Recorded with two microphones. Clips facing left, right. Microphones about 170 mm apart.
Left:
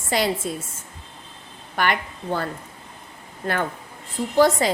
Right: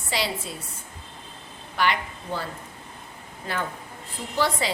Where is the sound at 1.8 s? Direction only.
50° left (ahead or behind).